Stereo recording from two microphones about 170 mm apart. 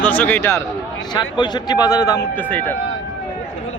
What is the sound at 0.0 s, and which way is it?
Speech, 10° left (ahead or behind).